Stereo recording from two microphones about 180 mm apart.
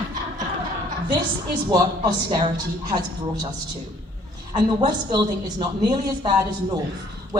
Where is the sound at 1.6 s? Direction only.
25° right (ahead or behind).